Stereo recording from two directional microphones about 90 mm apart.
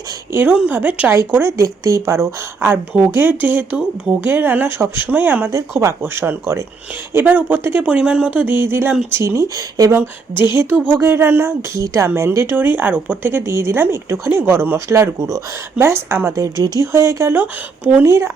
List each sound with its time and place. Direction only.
0.3 s a woman's voice: 15° right (ahead or behind)
1.3 s a woman's voice: 30° right (ahead or behind)
9.9 s a woman's voice: 25° right (ahead or behind)
16.3 s speech: 40° right (ahead or behind)
16.8 s a woman's voice: 30° right (ahead or behind)